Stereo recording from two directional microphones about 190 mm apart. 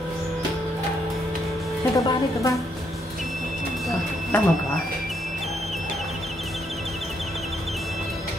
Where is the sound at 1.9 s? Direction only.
15° left (ahead or behind).